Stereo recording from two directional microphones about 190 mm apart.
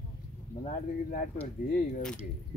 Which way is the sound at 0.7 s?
45° left (ahead or behind).